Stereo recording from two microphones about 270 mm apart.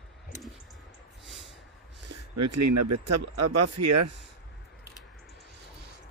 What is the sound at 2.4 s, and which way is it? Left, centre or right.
Speech, right.